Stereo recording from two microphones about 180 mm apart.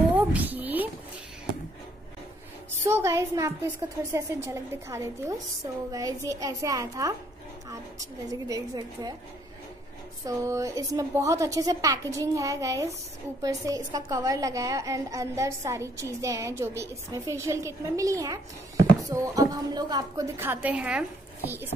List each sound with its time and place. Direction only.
0.1 s a sound: 10° right (ahead or behind)
2.8 s a woman's voice: 15° right (ahead or behind)
10.2 s a woman's voice: 15° right (ahead or behind)